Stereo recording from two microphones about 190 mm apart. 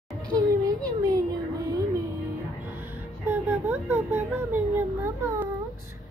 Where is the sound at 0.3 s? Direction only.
20° right (ahead or behind).